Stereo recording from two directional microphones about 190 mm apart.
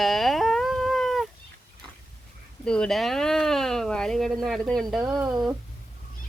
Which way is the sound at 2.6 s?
5° left (ahead or behind).